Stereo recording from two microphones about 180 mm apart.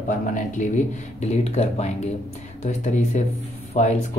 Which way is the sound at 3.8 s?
40° left (ahead or behind).